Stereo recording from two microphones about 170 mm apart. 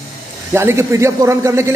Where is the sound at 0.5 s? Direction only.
15° right (ahead or behind).